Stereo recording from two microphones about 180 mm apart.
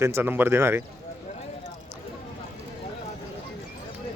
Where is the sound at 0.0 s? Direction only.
15° right (ahead or behind).